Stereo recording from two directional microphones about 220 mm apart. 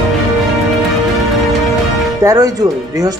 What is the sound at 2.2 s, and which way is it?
Speech, 15° right (ahead or behind).